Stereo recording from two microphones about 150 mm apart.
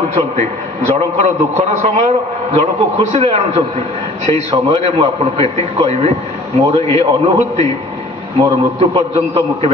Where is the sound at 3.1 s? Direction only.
45° right (ahead or behind).